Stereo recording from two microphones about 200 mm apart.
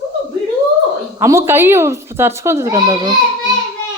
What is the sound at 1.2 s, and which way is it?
Speech, 15° right (ahead or behind).